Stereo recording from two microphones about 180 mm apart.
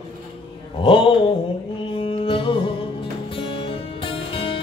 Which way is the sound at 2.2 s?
30° left (ahead or behind).